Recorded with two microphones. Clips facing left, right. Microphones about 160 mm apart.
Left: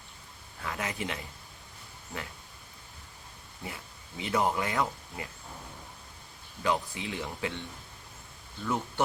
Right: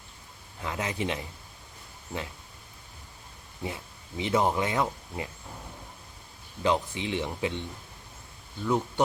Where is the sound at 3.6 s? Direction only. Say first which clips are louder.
Right 6 dB; 20° right (ahead or behind).